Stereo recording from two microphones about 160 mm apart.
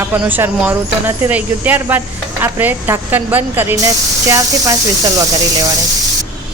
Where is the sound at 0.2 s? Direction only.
10° right (ahead or behind).